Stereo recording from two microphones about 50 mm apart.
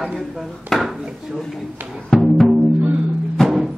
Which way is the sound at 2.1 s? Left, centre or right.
Centre.